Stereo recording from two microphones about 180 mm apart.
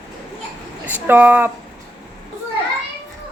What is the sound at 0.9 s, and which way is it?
Speech, 10° right (ahead or behind).